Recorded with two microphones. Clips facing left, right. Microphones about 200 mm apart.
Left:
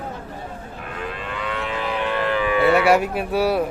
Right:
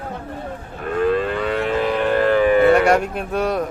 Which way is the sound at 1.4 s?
45° right (ahead or behind).